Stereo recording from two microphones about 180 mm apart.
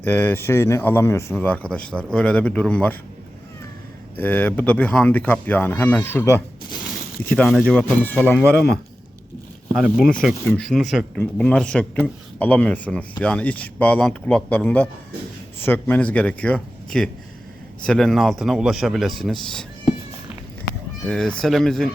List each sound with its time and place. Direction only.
0.0 s a man's voice: 10° left (ahead or behind)
4.2 s a man's voice: 10° left (ahead or behind)
9.7 s a man's voice: centre (ahead or behind)
21.1 s a man's voice: 5° left (ahead or behind)